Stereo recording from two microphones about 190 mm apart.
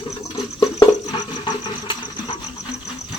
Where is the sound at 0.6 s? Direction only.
20° left (ahead or behind).